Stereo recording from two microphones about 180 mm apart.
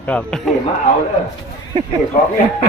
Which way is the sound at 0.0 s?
5° left (ahead or behind).